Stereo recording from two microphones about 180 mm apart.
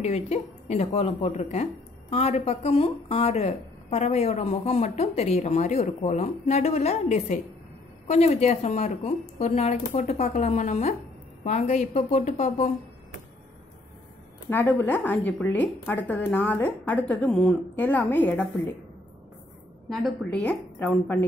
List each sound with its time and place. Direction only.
0.0 s speech: 40° left (ahead or behind)
14.5 s a woman's voice: 10° left (ahead or behind)
19.9 s a woman's voice: 5° left (ahead or behind)